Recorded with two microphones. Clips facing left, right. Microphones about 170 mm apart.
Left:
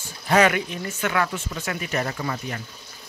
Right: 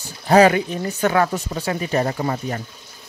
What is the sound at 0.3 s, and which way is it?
Speech, 30° right (ahead or behind).